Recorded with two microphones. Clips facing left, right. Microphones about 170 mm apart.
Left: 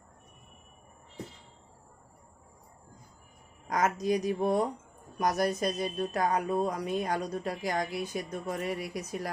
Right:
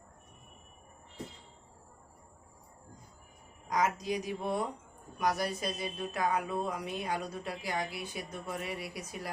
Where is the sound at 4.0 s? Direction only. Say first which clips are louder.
Left 7 dB; 45° left (ahead or behind).